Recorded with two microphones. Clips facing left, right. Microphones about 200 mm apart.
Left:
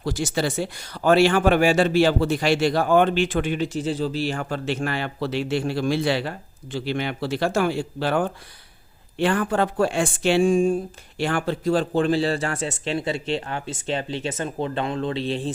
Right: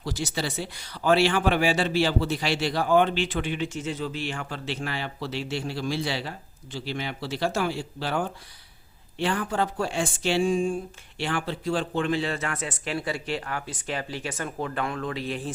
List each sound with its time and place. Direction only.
0.0 s speech: 50° left (ahead or behind); by 15.5 s 25° left (ahead or behind)